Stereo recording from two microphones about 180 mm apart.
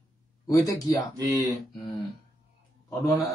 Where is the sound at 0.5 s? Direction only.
20° left (ahead or behind).